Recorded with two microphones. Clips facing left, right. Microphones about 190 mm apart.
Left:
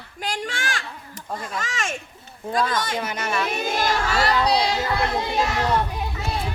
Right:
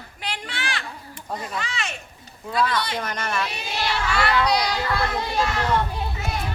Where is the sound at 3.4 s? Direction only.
50° left (ahead or behind); by 5.6 s 20° left (ahead or behind).